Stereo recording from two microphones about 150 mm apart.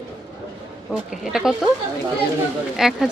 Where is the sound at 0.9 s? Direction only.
Centre (ahead or behind).